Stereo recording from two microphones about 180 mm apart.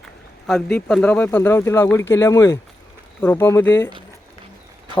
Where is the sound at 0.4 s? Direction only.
5° left (ahead or behind).